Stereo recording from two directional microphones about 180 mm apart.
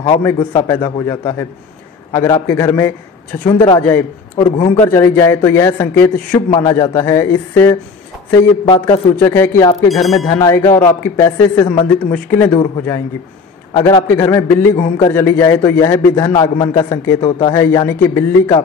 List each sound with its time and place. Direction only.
0.5 s a man's voice: 15° left (ahead or behind)
3.8 s speech: 10° left (ahead or behind)
4.5 s speech: 35° left (ahead or behind)
4.8 s speech: 10° left (ahead or behind)
8.8 s speech: 15° left (ahead or behind)
9.8 s speech: centre (ahead or behind)
10.3 s speech: 15° left (ahead or behind)